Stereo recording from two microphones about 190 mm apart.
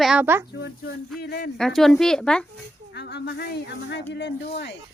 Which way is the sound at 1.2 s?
55° left (ahead or behind).